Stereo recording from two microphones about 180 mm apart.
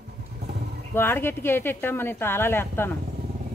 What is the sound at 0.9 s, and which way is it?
A woman's voice, 10° left (ahead or behind).